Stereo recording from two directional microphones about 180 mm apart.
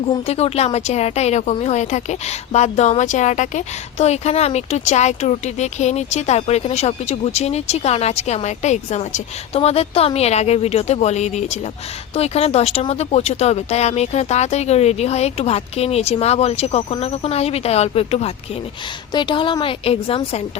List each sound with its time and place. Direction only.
0.3 s a woman's voice: 35° left (ahead or behind)